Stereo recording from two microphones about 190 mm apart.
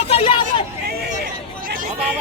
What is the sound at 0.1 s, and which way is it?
Hubbub, 25° left (ahead or behind).